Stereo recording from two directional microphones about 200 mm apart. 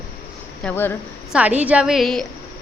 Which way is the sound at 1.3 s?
5° right (ahead or behind).